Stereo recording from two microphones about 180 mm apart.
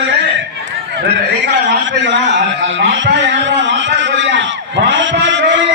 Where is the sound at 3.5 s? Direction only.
90° right.